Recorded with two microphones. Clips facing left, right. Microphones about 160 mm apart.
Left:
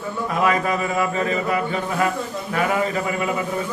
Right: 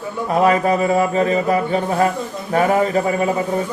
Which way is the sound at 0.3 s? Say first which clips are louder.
Right 6 dB; 35° right (ahead or behind).